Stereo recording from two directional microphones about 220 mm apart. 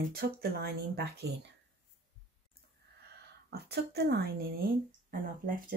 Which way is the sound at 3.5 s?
45° right (ahead or behind).